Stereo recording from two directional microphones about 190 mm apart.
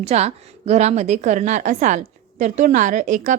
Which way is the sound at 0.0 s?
35° right (ahead or behind).